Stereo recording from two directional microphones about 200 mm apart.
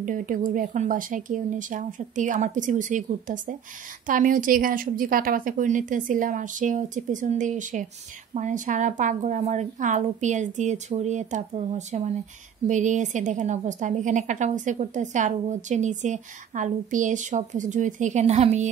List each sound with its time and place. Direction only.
0.0 s a woman's voice: 40° right (ahead or behind)